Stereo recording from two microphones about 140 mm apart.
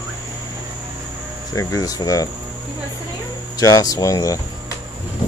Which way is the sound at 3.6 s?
25° left (ahead or behind).